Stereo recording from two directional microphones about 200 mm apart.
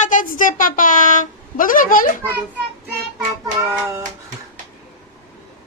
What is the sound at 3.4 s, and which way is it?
Child singing, 15° right (ahead or behind).